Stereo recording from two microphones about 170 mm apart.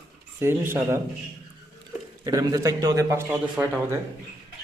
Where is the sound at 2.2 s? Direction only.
20° right (ahead or behind).